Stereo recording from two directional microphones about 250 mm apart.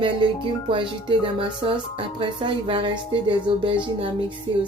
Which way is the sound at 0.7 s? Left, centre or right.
Centre.